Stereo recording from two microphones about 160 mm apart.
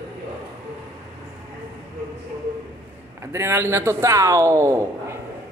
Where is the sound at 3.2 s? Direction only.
15° right (ahead or behind).